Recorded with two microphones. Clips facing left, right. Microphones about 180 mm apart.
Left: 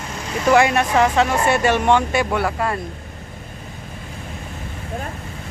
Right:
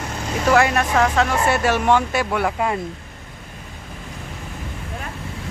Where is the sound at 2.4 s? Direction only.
15° right (ahead or behind).